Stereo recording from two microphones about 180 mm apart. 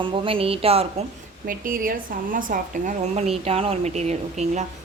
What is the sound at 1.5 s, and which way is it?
Speech, 50° right (ahead or behind).